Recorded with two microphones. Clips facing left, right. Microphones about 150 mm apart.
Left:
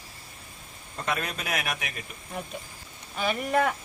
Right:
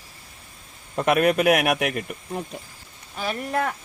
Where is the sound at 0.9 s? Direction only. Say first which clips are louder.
Right 12 dB; 70° right (ahead or behind).